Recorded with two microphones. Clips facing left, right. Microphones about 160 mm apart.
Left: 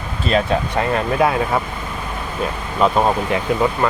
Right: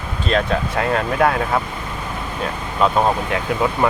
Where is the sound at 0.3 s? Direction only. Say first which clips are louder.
Left 1 dB; 5° left (ahead or behind).